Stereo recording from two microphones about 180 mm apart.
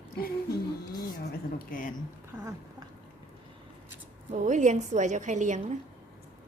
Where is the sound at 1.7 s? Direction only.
50° left (ahead or behind).